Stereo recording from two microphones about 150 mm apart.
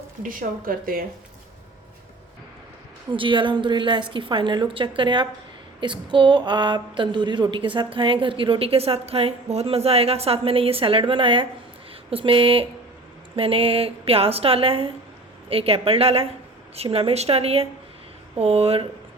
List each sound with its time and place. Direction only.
0.2 s speech: 65° right (ahead or behind)
3.1 s a woman's voice: 35° right (ahead or behind)